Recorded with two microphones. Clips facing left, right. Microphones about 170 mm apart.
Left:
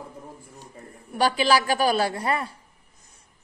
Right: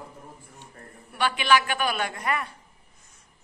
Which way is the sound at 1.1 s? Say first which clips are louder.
Left 2 dB; 35° left (ahead or behind).